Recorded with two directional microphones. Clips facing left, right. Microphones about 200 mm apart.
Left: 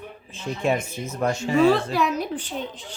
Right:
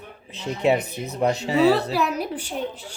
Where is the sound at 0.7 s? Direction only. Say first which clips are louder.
Right 3 dB; 35° right (ahead or behind).